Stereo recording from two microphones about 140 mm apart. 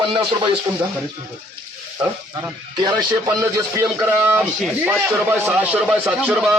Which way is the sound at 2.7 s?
35° right (ahead or behind).